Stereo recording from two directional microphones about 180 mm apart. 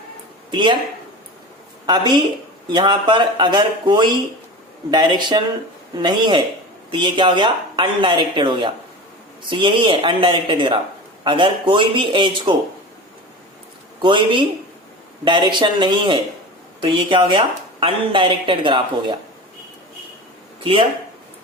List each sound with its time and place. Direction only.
0.5 s speech: 25° right (ahead or behind)
1.9 s speech: 25° right (ahead or behind)
14.0 s speech: 30° right (ahead or behind)